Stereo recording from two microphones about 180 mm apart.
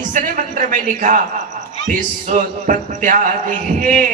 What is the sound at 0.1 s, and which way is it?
A man's voice, 45° right (ahead or behind).